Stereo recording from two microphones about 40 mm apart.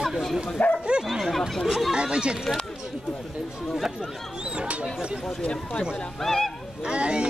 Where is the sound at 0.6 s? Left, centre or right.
Left.